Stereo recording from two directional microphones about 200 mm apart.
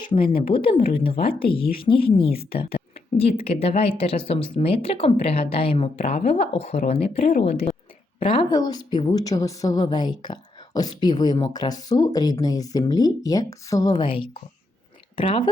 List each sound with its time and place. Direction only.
0.0 s speech: 25° left (ahead or behind)
2.3 s a woman's voice: 50° left (ahead or behind)
3.2 s speech: 30° left (ahead or behind)